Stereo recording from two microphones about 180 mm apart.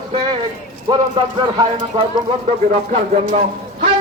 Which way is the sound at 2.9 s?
35° right (ahead or behind).